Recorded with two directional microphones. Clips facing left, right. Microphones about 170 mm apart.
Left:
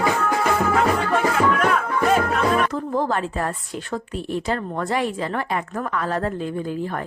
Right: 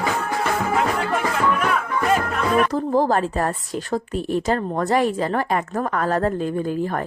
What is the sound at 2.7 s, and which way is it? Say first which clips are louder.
A woman's voice: right 4 dB; 35° right (ahead or behind).